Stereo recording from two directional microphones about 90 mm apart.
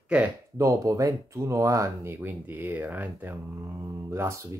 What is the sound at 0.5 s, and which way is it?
Speech, 35° right (ahead or behind).